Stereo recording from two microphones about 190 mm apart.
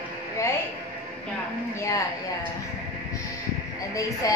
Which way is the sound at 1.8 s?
15° left (ahead or behind).